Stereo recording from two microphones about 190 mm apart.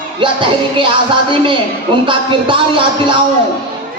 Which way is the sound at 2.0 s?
25° right (ahead or behind).